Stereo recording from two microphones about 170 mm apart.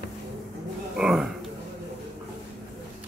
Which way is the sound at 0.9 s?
5° right (ahead or behind).